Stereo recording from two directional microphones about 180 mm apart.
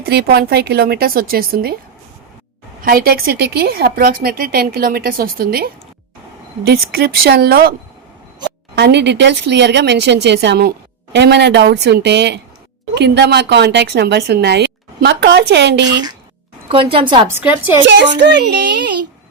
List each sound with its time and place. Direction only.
0.0 s a woman's voice: 60° right (ahead or behind)
2.8 s a woman's voice: 55° right (ahead or behind)
8.7 s speech: 70° right (ahead or behind)
16.6 s a woman's voice: 30° right (ahead or behind)
17.2 s a woman's voice: 10° right (ahead or behind)
17.8 s speech: 75° right (ahead or behind)